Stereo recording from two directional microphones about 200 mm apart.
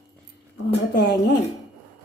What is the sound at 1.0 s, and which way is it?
Speech, 55° left (ahead or behind).